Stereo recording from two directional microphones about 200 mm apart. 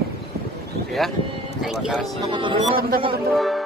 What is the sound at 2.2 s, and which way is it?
Speech, 25° right (ahead or behind).